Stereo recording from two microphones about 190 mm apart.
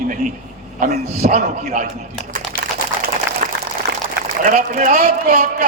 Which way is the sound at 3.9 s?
60° right (ahead or behind).